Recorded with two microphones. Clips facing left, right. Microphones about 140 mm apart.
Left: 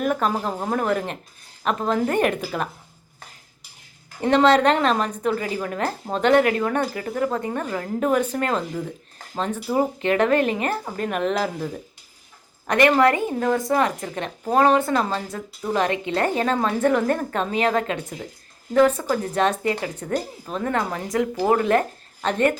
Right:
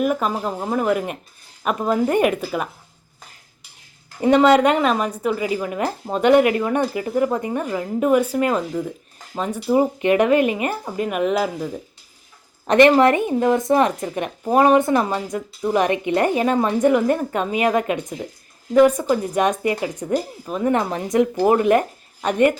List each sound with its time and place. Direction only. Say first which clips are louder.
0.0 s speech: right 2 dB; 5° right (ahead or behind)
4.2 s speech: right 3 dB; 10° right (ahead or behind)
12.6 s a woman's voice: right 4 dB; 20° right (ahead or behind)